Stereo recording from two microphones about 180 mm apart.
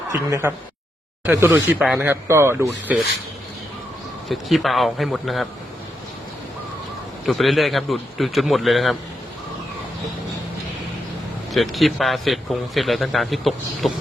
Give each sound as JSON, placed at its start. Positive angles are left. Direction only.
{"t": 0.1, "sound": "speech", "side_deg": -15}
{"t": 4.3, "sound": "a man's voice", "side_deg": 0}
{"t": 7.3, "sound": "a man's voice", "side_deg": 0}
{"t": 11.5, "sound": "a man's voice", "side_deg": 0}